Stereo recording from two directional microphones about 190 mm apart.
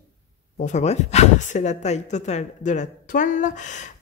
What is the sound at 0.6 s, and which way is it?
Speech, 40° left (ahead or behind).